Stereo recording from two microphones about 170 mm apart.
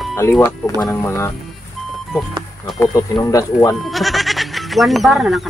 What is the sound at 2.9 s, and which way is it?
Speech, 20° left (ahead or behind).